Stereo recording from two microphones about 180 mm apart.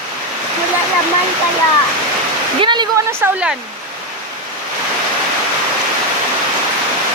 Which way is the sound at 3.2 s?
5° right (ahead or behind).